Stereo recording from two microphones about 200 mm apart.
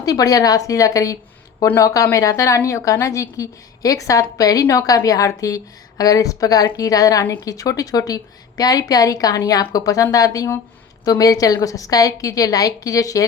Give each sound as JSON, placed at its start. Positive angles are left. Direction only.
{"t": 0.0, "sound": "a woman's voice", "side_deg": 20}